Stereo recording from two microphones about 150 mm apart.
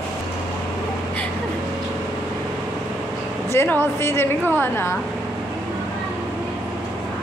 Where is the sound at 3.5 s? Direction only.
15° left (ahead or behind).